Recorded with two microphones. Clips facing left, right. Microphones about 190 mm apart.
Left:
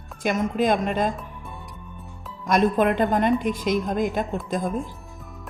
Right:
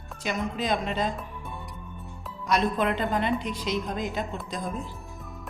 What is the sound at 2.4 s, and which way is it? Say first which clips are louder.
A woman's voice: left 5 dB; 50° left (ahead or behind).